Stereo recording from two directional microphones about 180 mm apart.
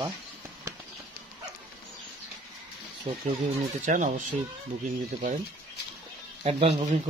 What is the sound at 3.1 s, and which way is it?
Speech, 35° right (ahead or behind).